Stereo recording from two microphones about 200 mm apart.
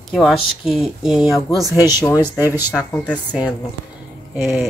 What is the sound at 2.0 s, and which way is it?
Speech, 20° left (ahead or behind).